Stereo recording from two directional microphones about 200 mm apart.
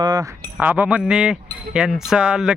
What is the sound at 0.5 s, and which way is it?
Speech, 10° right (ahead or behind).